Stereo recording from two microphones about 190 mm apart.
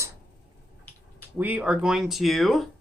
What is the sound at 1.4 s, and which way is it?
Speech, 10° right (ahead or behind).